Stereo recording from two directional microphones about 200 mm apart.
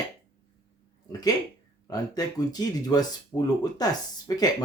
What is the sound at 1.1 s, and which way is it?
Speech, 20° left (ahead or behind).